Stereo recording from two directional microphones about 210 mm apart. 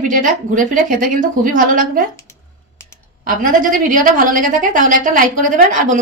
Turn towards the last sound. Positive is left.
turn(degrees=-40)  # may be behind; listen again after turning